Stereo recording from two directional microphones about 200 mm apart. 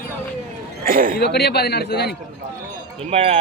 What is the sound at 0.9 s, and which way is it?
Speech, 45° right (ahead or behind).